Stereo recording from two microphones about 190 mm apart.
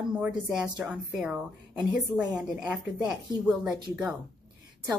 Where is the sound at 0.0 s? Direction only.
5° right (ahead or behind).